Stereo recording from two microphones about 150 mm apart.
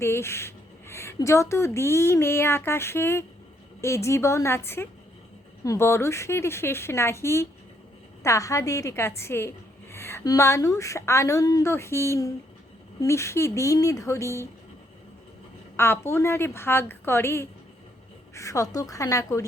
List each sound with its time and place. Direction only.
0.0 s speech: 15° left (ahead or behind)
15.7 s speech: 15° left (ahead or behind)